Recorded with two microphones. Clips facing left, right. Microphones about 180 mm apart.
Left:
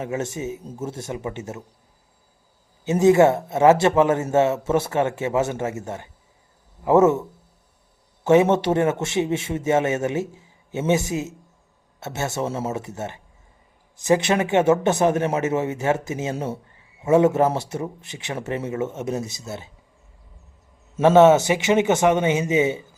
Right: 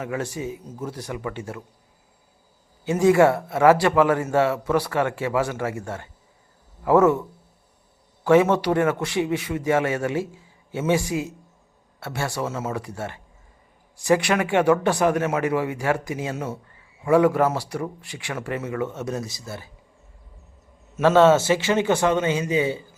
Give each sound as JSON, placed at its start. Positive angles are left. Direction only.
{"t": 0.0, "sound": "speech", "side_deg": 20}
{"t": 2.8, "sound": "speech", "side_deg": 20}
{"t": 21.0, "sound": "speech", "side_deg": 15}